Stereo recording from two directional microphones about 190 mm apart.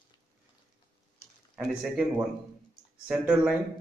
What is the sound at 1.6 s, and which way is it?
Speech, 5° right (ahead or behind).